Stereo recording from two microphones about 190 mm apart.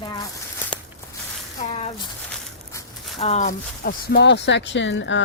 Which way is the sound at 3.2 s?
40° left (ahead or behind).